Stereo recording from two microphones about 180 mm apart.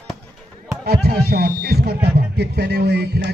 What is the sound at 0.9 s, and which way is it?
Speech, 60° right (ahead or behind).